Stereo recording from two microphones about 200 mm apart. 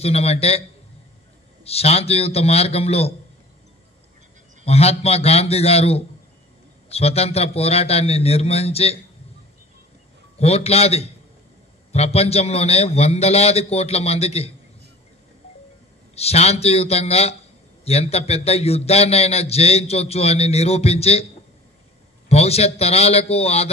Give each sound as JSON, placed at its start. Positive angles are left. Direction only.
{"t": 0.0, "sound": "a man's voice", "side_deg": 30}
{"t": 4.6, "sound": "a man's voice", "side_deg": 30}
{"t": 10.4, "sound": "a man's voice", "side_deg": 30}
{"t": 16.2, "sound": "a man's voice", "side_deg": 30}
{"t": 22.3, "sound": "a man's voice", "side_deg": 30}